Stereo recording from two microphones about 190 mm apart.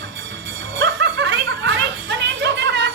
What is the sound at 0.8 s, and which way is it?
Snicker, 70° right (ahead or behind).